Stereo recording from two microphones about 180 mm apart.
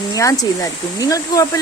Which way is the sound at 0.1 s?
20° left (ahead or behind).